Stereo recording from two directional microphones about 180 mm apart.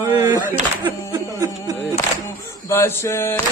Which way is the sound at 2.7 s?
15° left (ahead or behind).